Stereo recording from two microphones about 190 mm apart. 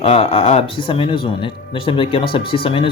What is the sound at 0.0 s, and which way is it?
Speech, 30° left (ahead or behind).